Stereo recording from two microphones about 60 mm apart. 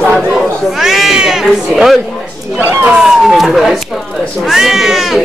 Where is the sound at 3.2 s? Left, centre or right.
Centre.